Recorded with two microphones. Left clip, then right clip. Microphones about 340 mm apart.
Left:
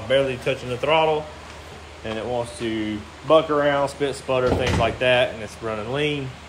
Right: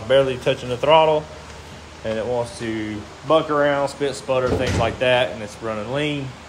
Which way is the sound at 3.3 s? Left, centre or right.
Centre.